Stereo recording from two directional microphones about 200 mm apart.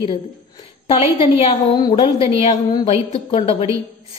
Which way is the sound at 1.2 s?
25° left (ahead or behind).